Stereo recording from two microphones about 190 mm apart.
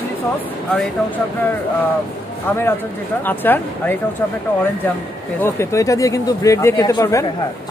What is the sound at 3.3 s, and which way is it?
Speech, 10° left (ahead or behind).